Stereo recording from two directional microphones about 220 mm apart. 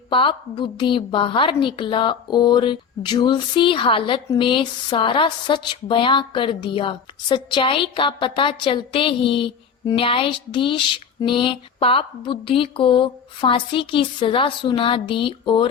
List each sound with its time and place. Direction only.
0.1 s a woman's voice: 25° left (ahead or behind)